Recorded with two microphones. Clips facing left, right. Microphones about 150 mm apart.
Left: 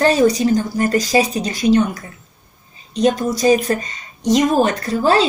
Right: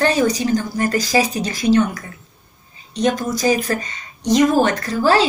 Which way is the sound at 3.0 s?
25° left (ahead or behind).